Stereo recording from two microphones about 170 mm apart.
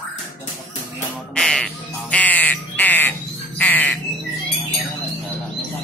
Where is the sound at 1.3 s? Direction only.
5° left (ahead or behind).